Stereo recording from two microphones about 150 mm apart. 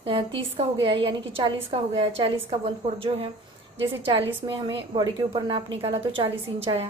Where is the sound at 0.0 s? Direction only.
35° right (ahead or behind).